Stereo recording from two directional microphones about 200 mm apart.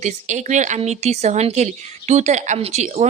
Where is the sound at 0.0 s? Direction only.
35° right (ahead or behind).